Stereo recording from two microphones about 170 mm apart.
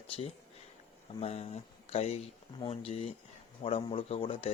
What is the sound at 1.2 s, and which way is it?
Speech, 40° left (ahead or behind).